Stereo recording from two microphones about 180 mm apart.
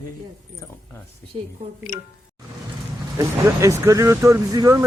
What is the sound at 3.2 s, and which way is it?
Speech, 15° right (ahead or behind).